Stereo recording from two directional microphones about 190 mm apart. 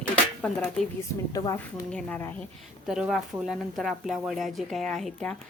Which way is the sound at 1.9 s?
5° left (ahead or behind).